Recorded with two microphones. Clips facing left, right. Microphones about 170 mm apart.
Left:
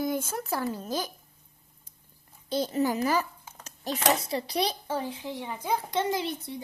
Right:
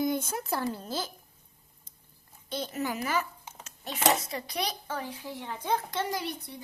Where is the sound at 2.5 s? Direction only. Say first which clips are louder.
Left 6 dB; 35° left (ahead or behind).